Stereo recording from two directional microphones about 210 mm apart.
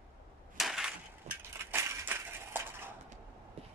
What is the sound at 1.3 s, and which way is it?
Crushing, 30° right (ahead or behind).